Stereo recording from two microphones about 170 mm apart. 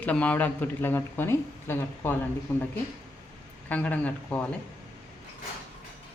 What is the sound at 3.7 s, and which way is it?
Speech, 10° left (ahead or behind).